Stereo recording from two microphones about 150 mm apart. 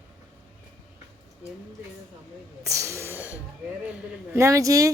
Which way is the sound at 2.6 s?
20° right (ahead or behind).